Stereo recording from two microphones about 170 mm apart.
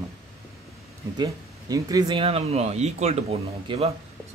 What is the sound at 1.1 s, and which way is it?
Speech, 20° right (ahead or behind).